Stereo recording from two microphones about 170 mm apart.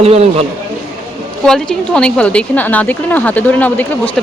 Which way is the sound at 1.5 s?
5° left (ahead or behind).